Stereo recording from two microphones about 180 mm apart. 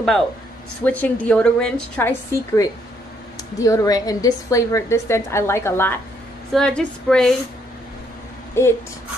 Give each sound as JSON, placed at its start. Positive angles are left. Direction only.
{"t": 0.8, "sound": "a woman's voice", "side_deg": 10}
{"t": 8.6, "sound": "a woman's voice", "side_deg": 15}